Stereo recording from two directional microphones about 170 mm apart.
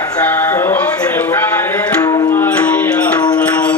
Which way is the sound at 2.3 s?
10° left (ahead or behind).